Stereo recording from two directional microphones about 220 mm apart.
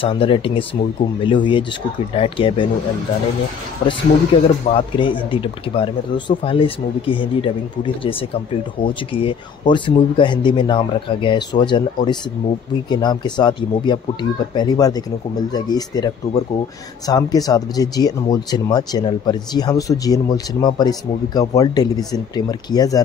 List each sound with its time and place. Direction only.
0.0 s speech: 25° left (ahead or behind)
4.3 s speech: 25° left (ahead or behind)